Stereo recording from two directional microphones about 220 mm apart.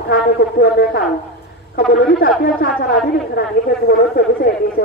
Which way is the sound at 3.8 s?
45° left (ahead or behind).